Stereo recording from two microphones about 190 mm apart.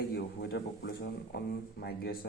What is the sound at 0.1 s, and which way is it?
A man's voice, 55° left (ahead or behind).